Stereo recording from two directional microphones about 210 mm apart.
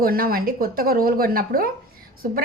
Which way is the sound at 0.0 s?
45° right (ahead or behind).